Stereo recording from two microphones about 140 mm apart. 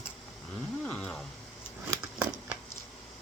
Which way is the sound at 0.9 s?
5° left (ahead or behind).